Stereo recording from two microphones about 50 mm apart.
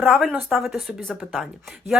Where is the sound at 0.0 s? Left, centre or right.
Centre.